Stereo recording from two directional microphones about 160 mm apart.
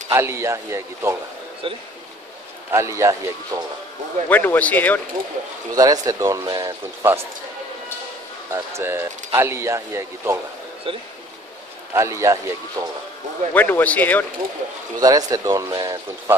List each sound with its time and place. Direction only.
0.1 s speech: 15° right (ahead or behind)
1.6 s speech: 35° right (ahead or behind)
2.7 s speech: 20° right (ahead or behind)
4.3 s speech: 10° left (ahead or behind)
5.8 s speech: 25° right (ahead or behind)
8.5 s speech: 20° right (ahead or behind)
10.9 s speech: 35° right (ahead or behind)
11.9 s speech: 20° right (ahead or behind)
13.5 s speech: 10° left (ahead or behind)
15.0 s speech: 25° right (ahead or behind)